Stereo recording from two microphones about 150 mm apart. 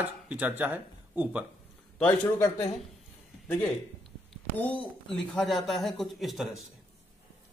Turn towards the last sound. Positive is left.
turn(degrees=0)  # may be behind; listen again after turning